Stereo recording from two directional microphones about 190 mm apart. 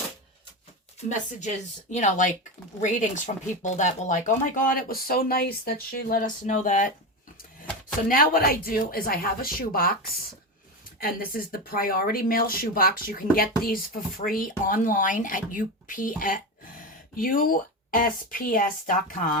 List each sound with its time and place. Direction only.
1.4 s speech: 40° left (ahead or behind)
8.0 s speech: 50° left (ahead or behind)
11.0 s speech: 50° left (ahead or behind)